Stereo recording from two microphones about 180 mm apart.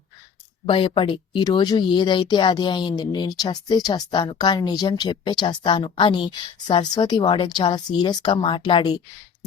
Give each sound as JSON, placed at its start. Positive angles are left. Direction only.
{"t": 0.6, "sound": "speech", "side_deg": 30}